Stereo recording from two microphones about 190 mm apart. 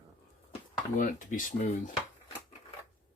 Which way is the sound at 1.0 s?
45° left (ahead or behind).